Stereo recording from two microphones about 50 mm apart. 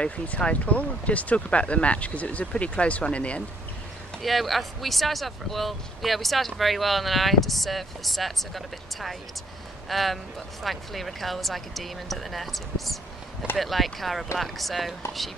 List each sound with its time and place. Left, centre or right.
0.4 s speech: left
4.2 s speech: centre